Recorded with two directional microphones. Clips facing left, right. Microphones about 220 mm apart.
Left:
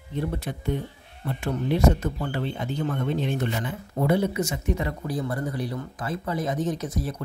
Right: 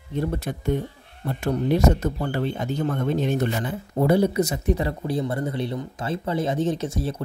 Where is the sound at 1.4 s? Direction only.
40° right (ahead or behind).